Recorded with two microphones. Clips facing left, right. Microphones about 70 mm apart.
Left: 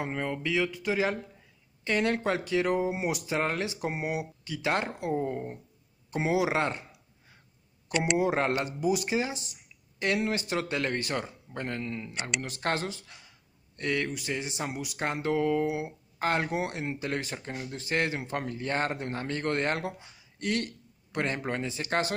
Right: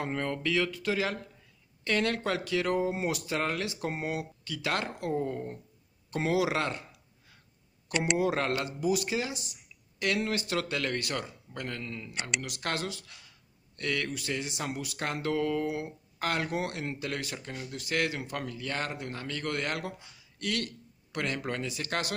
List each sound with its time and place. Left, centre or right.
0.0 s speech: centre
8.2 s speech: left
12.1 s speech: centre
12.4 s speech: left